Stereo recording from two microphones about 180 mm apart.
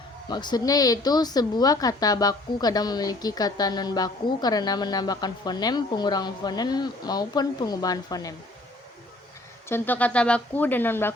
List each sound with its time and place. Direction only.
0.3 s speech: 25° left (ahead or behind)
9.6 s speech: 10° left (ahead or behind)